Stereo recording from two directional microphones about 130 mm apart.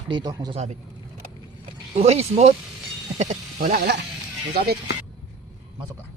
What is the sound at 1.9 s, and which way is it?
Speech, 55° right (ahead or behind).